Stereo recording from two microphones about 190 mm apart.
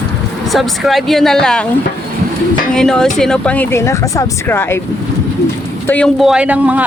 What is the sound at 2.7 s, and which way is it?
Speech, 5° left (ahead or behind).